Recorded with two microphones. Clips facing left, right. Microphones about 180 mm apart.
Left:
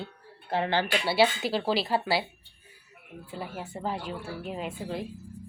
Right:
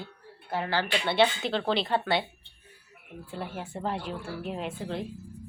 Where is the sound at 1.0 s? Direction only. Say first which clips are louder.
Right 1 dB; 5° left (ahead or behind).